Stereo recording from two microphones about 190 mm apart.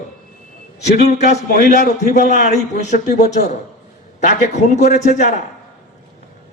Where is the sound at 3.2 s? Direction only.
40° left (ahead or behind).